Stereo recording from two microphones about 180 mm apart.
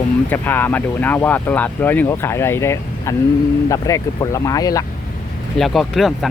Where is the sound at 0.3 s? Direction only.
10° left (ahead or behind).